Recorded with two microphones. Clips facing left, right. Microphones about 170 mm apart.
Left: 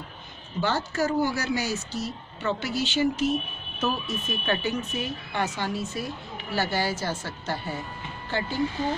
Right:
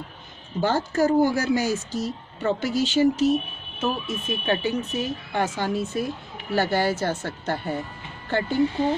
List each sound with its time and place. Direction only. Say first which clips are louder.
0.6 s speech: right 4 dB; 50° right (ahead or behind)
3.8 s speech: right 2 dB; 25° right (ahead or behind)
5.0 s a woman's voice: right 4 dB; 50° right (ahead or behind)